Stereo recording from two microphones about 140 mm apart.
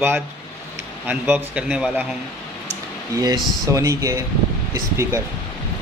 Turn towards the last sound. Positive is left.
turn(degrees=-20)  # may be behind; listen again after turning